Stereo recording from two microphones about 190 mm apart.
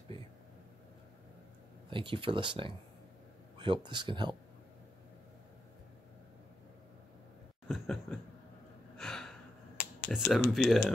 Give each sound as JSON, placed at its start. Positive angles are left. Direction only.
{"t": 1.9, "sound": "speech", "side_deg": -25}
{"t": 7.6, "sound": "a sound", "side_deg": 0}
{"t": 8.9, "sound": "gasp", "side_deg": 0}
{"t": 10.1, "sound": "speech", "side_deg": 5}